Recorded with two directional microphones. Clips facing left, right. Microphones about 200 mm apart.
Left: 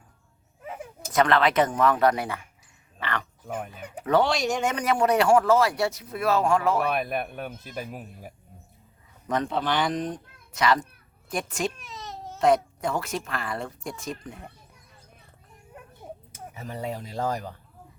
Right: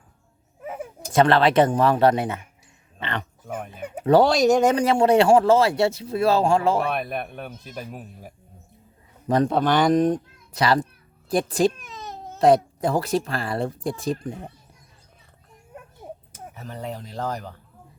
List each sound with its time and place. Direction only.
0.7 s speech: 30° right (ahead or behind)
3.4 s speech: centre (ahead or behind)
3.7 s speech: 30° right (ahead or behind)
6.8 s speech: 5° left (ahead or behind)
9.2 s speech: 35° right (ahead or behind)
10.5 s speech: 35° right (ahead or behind)
16.6 s speech: 10° left (ahead or behind)